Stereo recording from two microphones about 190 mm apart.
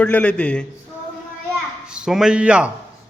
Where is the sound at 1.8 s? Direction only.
5° right (ahead or behind).